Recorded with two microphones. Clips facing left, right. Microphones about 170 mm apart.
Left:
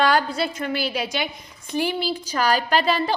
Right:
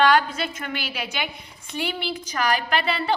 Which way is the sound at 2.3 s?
35° left (ahead or behind).